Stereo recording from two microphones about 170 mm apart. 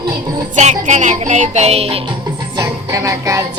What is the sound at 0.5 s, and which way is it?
Music, 45° right (ahead or behind).